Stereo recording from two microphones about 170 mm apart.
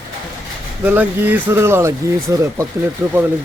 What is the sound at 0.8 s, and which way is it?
Speech, 10° right (ahead or behind).